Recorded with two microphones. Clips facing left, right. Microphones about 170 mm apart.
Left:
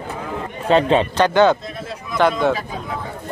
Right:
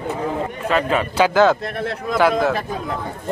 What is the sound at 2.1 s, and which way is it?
Speech, 5° right (ahead or behind).